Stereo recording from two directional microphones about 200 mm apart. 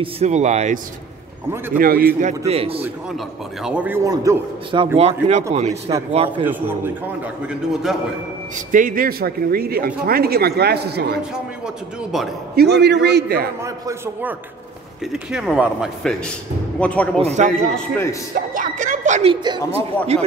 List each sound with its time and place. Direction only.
0.0 s speech: 35° right (ahead or behind)
1.7 s speech: 45° right (ahead or behind)
2.1 s speech: 35° right (ahead or behind)
3.6 s a man's voice: 5° right (ahead or behind); by 6.4 s 25° right (ahead or behind)
6.4 s a man's voice: 10° right (ahead or behind)
8.7 s speech: 45° right (ahead or behind)
11.3 s a man's voice: 5° right (ahead or behind)
12.5 s a man's voice: 55° right (ahead or behind)
13.6 s a man's voice: 15° right (ahead or behind)
15.3 s a man's voice: 5° right (ahead or behind)
17.2 s speech: 35° right (ahead or behind)
17.7 s speech: 10° left (ahead or behind)
18.3 s speech: 40° right (ahead or behind)
19.4 s a man's voice: 25° right (ahead or behind)